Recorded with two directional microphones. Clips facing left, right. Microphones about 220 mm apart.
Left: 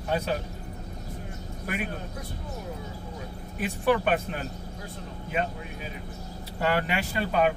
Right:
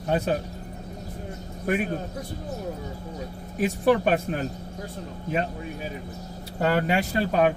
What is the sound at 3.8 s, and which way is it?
Speech, 40° right (ahead or behind).